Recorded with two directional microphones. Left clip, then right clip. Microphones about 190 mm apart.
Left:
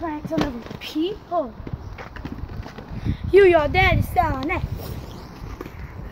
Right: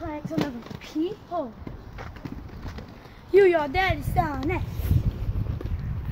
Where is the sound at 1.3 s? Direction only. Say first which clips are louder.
Left 7 dB; centre (ahead or behind).